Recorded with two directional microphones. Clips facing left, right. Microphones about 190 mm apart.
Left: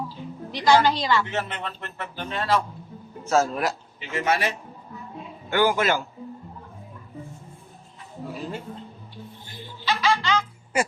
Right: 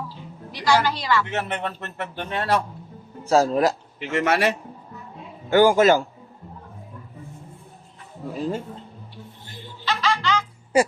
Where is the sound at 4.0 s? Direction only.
70° right (ahead or behind).